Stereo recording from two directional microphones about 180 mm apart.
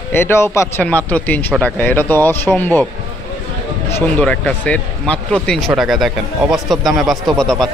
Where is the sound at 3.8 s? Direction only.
10° left (ahead or behind).